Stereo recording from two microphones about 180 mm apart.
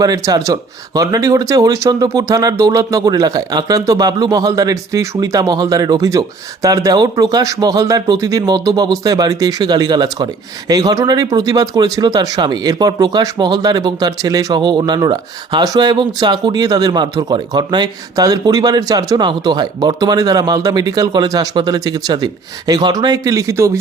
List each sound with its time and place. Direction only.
0.0 s speech: 20° right (ahead or behind)